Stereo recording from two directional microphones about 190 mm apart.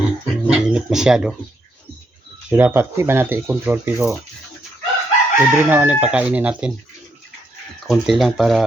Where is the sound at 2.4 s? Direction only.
10° right (ahead or behind).